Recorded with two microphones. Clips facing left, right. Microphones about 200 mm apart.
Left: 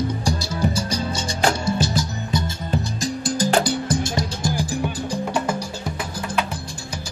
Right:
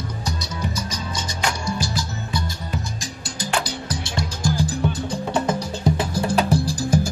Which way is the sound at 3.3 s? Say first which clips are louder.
Left 6 dB; 40° left (ahead or behind).